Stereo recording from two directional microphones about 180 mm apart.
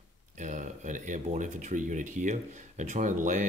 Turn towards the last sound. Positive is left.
turn(degrees=-45)  # may be behind; listen again after turning